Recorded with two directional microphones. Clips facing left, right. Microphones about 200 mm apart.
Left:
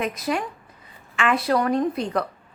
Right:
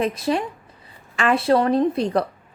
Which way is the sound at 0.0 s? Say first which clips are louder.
Right 4 dB; 30° right (ahead or behind).